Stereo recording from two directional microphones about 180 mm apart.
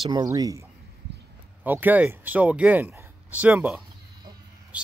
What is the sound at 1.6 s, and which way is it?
Speech, 10° right (ahead or behind).